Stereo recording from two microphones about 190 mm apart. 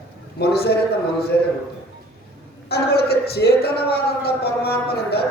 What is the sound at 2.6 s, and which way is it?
Speech, 55° left (ahead or behind).